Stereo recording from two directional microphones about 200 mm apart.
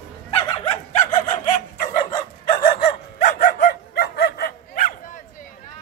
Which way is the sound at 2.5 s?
45° left (ahead or behind).